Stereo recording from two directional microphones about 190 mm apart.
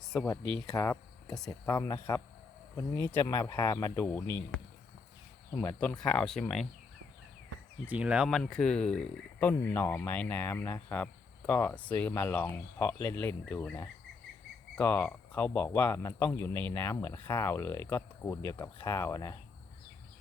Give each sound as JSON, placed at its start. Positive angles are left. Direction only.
{"t": 0.7, "sound": "speech", "side_deg": 15}
{"t": 7.9, "sound": "speech", "side_deg": -5}